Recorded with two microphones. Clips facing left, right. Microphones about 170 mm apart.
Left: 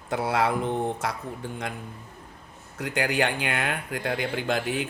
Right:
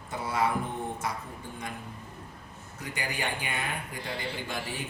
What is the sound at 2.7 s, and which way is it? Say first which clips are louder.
Speech: left 10 dB; 75° left (ahead or behind).